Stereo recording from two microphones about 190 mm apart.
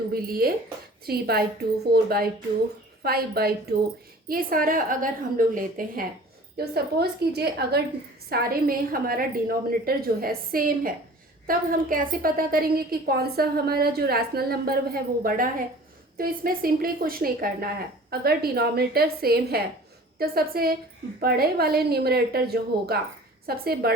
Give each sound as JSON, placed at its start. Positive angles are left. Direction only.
{"t": 0.1, "sound": "a woman's voice", "side_deg": -50}